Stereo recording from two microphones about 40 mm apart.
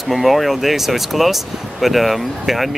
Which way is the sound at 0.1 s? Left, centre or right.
Centre.